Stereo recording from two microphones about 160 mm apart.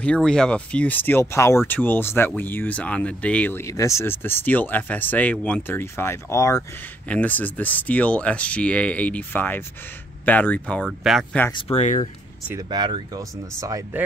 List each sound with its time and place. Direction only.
0.0 s speech: 5° left (ahead or behind)
10.8 s speech: centre (ahead or behind)
11.7 s speech: 45° left (ahead or behind)
12.5 s speech: 25° right (ahead or behind)